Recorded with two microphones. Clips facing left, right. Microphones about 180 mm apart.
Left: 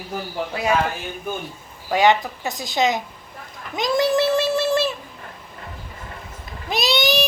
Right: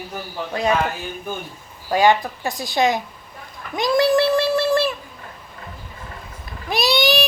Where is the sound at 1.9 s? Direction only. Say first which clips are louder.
Right 1 dB; 20° left (ahead or behind).